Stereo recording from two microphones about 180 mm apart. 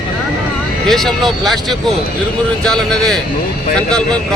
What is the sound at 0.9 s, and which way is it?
Speech, centre (ahead or behind).